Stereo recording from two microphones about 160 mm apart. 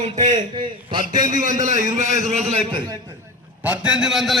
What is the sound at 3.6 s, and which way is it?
Speech, 5° right (ahead or behind).